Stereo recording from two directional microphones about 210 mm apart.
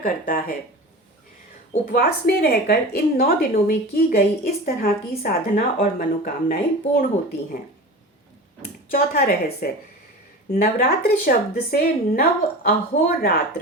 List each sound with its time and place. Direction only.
0.0 s a woman's voice: 40° left (ahead or behind)
1.8 s a woman's voice: 45° left (ahead or behind)
8.9 s a woman's voice: 45° left (ahead or behind)